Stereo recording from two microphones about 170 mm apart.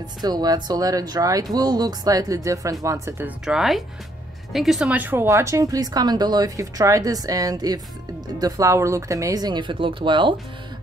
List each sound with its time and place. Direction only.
0.2 s speech: 25° right (ahead or behind)